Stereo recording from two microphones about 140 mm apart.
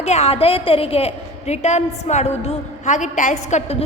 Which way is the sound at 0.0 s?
50° left (ahead or behind).